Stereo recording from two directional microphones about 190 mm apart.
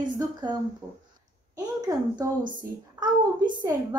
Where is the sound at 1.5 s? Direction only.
20° right (ahead or behind).